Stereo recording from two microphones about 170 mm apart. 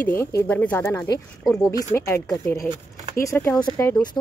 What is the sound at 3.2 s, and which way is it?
Speech, 15° left (ahead or behind).